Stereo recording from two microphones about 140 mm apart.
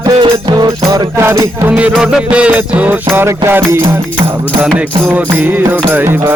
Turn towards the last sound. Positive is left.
turn(degrees=-15)  # may be behind; listen again after turning